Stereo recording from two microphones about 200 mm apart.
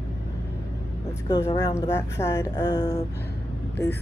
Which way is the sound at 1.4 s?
20° left (ahead or behind).